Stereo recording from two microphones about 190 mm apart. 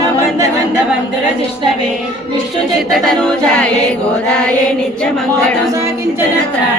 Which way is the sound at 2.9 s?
Centre (ahead or behind).